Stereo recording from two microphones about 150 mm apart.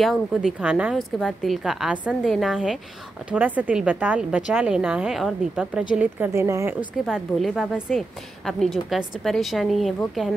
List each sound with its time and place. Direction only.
0.0 s a woman's voice: centre (ahead or behind); by 6.9 s 20° right (ahead or behind)
7.1 s a woman's voice: centre (ahead or behind)